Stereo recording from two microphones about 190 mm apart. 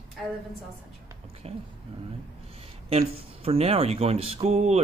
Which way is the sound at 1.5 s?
30° right (ahead or behind).